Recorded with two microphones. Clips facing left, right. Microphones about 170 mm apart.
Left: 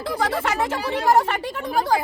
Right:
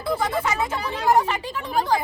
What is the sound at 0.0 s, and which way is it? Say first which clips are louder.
Speech: even; 85° left.